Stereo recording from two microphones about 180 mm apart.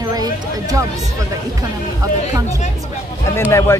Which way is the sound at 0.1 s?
20° right (ahead or behind).